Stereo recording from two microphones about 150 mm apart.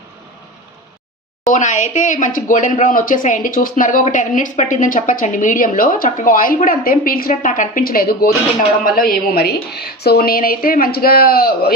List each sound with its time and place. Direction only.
1.5 s a woman's voice: 55° left (ahead or behind); by 11.7 s 85° left